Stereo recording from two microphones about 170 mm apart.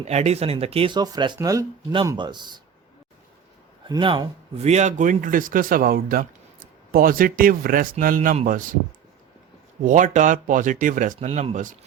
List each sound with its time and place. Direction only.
0.0 s speech: 40° right (ahead or behind)
3.8 s speech: 25° right (ahead or behind); by 8.7 s 55° right (ahead or behind)
9.8 s speech: 45° right (ahead or behind)